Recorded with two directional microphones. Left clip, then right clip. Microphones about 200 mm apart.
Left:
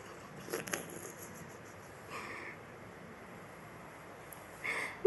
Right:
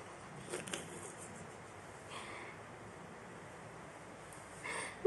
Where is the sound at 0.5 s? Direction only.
20° left (ahead or behind).